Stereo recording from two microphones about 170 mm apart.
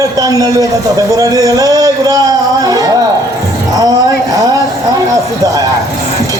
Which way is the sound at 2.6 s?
20° right (ahead or behind).